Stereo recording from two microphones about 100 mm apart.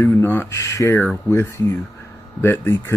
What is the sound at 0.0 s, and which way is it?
Speech, 25° left (ahead or behind).